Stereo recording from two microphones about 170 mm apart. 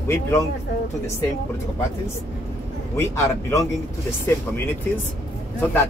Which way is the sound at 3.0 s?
15° left (ahead or behind).